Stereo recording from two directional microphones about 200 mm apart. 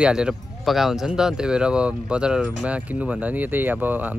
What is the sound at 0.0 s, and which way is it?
Speech, 5° right (ahead or behind).